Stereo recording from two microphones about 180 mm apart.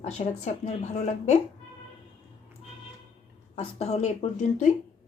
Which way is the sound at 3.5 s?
35° left (ahead or behind).